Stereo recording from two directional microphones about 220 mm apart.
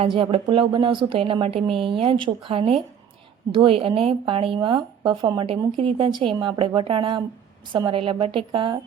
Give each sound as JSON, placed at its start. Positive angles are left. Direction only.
{"t": 0.0, "sound": "speech", "side_deg": -25}